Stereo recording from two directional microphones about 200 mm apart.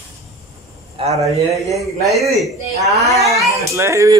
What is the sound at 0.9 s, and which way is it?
Speech, 30° right (ahead or behind).